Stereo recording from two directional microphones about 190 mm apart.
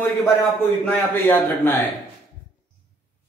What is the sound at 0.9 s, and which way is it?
Speech, 10° left (ahead or behind).